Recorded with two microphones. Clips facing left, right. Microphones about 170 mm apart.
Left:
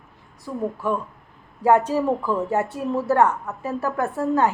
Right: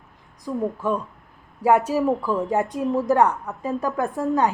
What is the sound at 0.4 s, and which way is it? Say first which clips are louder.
A woman's voice: right 1 dB; 15° right (ahead or behind).